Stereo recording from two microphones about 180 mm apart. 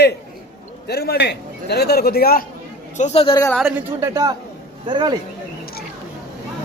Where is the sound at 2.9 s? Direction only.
40° left (ahead or behind).